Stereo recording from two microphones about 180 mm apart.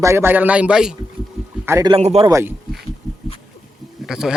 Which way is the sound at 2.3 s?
15° right (ahead or behind).